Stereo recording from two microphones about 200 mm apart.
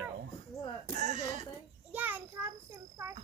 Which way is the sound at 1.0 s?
35° right (ahead or behind).